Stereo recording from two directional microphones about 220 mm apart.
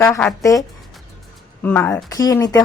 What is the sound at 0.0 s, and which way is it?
Speech, 10° left (ahead or behind).